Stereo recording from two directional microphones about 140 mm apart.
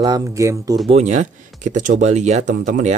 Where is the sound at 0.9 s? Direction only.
55° right (ahead or behind).